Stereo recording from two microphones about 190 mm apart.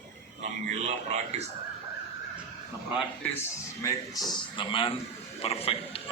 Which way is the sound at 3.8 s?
20° left (ahead or behind).